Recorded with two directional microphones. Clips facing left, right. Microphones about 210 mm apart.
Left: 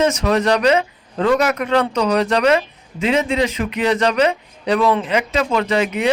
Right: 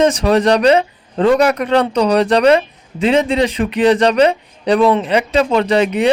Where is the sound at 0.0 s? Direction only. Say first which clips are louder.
Right 4 dB; 30° right (ahead or behind).